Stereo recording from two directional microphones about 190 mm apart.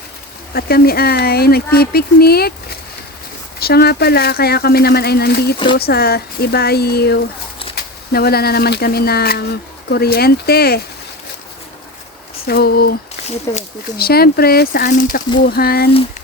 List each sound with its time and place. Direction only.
0.5 s speech: 55° left (ahead or behind)
12.5 s speech: 55° left (ahead or behind)
13.5 s speech: 15° left (ahead or behind)
14.0 s speech: 55° left (ahead or behind)